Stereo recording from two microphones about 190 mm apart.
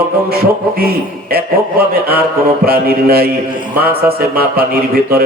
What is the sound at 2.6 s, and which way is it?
Mantra, 55° right (ahead or behind).